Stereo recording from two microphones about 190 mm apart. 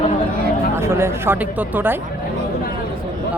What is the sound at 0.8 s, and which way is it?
Speech, 15° right (ahead or behind).